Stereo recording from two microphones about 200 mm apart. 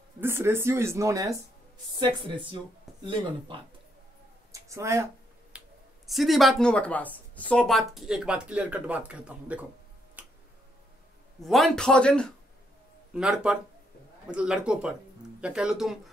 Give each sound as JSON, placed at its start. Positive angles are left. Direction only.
{"t": 0.2, "sound": "speech", "side_deg": -10}
{"t": 5.5, "sound": "finger snapping", "side_deg": -5}
{"t": 6.0, "sound": "speech", "side_deg": 0}
{"t": 10.2, "sound": "tick-tock", "side_deg": -5}
{"t": 11.4, "sound": "speech", "side_deg": 0}